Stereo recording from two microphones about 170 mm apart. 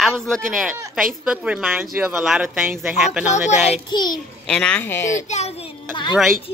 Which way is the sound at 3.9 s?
25° left (ahead or behind).